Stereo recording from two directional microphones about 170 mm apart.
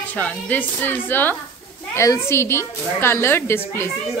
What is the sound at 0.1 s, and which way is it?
A woman's voice, 10° left (ahead or behind).